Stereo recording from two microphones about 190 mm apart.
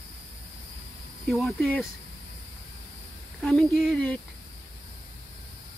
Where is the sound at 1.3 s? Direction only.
5° left (ahead or behind).